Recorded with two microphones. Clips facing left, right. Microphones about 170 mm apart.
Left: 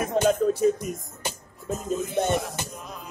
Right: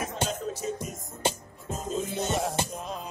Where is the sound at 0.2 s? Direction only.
55° left (ahead or behind).